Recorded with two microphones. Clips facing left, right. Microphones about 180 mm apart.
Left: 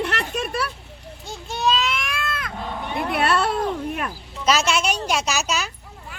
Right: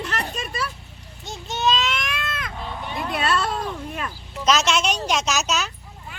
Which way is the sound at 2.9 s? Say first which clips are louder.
Left 3 dB; 60° left (ahead or behind).